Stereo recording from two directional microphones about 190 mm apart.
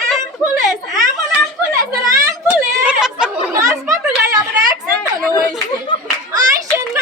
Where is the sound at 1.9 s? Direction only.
10° right (ahead or behind).